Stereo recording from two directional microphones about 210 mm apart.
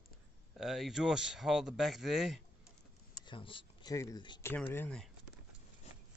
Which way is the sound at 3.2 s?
25° left (ahead or behind).